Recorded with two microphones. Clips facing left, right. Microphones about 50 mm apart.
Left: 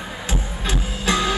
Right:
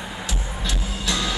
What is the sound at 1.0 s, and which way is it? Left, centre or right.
Music, left.